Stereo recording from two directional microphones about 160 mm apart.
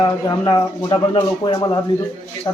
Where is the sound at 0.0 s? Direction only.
30° left (ahead or behind).